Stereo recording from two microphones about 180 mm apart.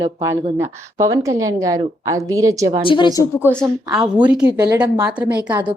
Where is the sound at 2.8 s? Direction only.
25° left (ahead or behind).